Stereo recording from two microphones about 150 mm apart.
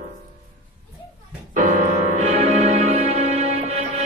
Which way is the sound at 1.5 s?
55° right (ahead or behind).